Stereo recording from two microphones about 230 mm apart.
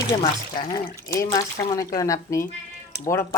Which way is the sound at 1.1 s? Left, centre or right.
Centre.